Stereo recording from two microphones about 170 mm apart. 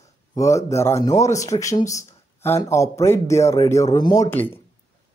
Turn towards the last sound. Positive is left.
turn(degrees=10)  # may be behind; listen again after turning